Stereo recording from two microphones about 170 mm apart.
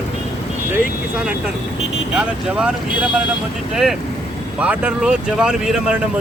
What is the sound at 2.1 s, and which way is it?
Speech, 5° right (ahead or behind).